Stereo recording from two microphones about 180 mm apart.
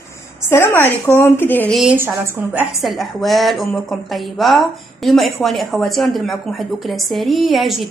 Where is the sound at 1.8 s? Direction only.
10° right (ahead or behind).